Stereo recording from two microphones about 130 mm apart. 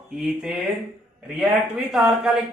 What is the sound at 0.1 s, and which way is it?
Speech, 5° right (ahead or behind).